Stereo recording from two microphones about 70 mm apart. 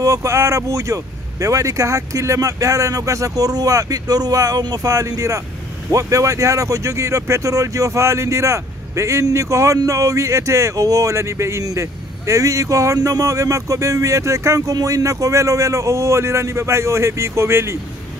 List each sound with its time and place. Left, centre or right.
0.0 s speech: right